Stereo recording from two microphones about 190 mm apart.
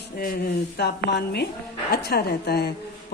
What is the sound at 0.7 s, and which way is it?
Speech, 60° left (ahead or behind).